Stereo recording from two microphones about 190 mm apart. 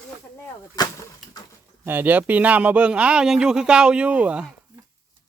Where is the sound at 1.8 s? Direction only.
10° right (ahead or behind).